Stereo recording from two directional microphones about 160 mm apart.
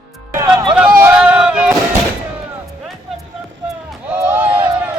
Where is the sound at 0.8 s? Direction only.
10° right (ahead or behind).